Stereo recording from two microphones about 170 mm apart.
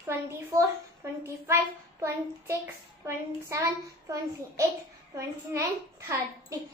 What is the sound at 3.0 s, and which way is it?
A child's voice, 15° right (ahead or behind).